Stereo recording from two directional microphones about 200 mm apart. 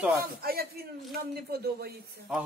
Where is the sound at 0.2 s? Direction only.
50° right (ahead or behind).